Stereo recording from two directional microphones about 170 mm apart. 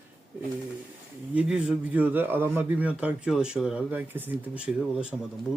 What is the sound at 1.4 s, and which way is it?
A man's voice, 5° right (ahead or behind).